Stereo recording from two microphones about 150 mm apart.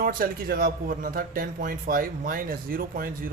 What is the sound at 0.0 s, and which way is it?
A man's voice, 85° right.